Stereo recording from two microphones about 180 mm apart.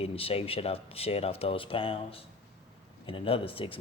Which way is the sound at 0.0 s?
30° left (ahead or behind).